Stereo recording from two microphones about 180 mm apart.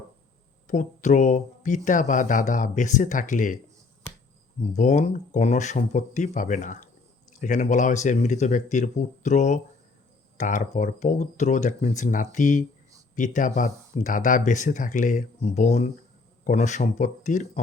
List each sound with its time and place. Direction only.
0.7 s speech: 45° left (ahead or behind)
4.7 s speech: 40° left (ahead or behind)